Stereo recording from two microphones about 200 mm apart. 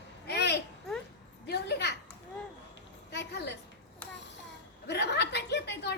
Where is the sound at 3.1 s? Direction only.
55° left (ahead or behind).